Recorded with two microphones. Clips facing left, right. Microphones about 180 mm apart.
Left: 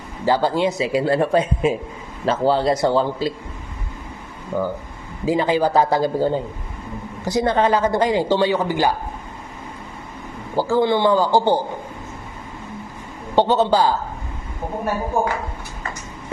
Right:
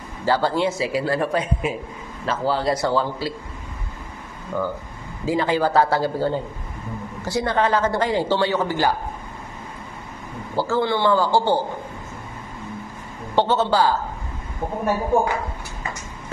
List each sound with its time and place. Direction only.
0.2 s speech: 15° left (ahead or behind)
4.5 s a woman's voice: 20° left (ahead or behind)
10.5 s a woman's voice: 15° left (ahead or behind)
13.4 s a woman's voice: 15° left (ahead or behind)